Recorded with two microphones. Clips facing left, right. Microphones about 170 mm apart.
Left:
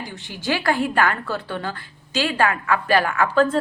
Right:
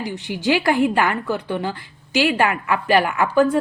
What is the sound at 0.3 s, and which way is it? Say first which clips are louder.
A woman's voice: right 4 dB; 15° right (ahead or behind).